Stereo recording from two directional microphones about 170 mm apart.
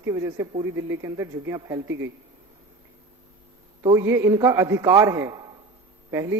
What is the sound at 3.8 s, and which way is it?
A woman's voice, 15° right (ahead or behind).